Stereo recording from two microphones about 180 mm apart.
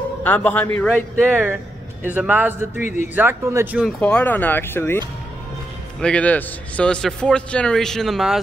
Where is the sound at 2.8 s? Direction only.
45° left (ahead or behind).